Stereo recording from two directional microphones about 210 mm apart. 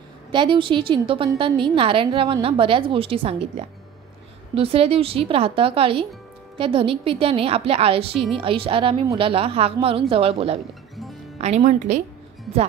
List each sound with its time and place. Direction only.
0.3 s a woman's voice: 20° right (ahead or behind)